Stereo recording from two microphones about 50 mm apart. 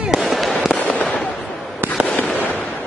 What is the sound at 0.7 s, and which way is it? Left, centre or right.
Fireworks, left.